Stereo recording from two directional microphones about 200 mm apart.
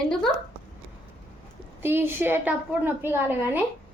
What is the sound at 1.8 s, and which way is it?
A woman's voice, 10° right (ahead or behind).